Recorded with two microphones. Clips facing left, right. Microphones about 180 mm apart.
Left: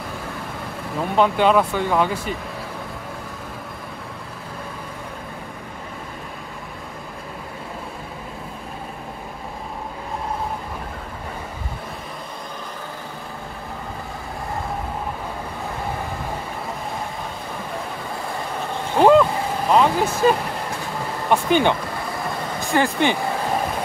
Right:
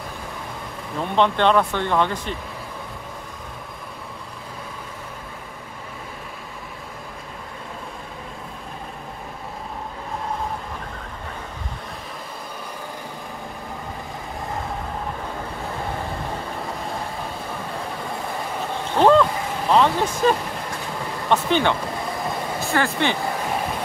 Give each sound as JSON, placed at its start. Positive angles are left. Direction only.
{"t": 1.1, "sound": "speech", "side_deg": 5}
{"t": 18.9, "sound": "vehicle", "side_deg": 10}
{"t": 21.3, "sound": "speech", "side_deg": 15}